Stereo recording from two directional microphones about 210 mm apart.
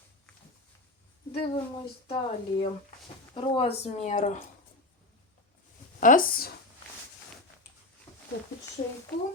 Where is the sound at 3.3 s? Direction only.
25° left (ahead or behind).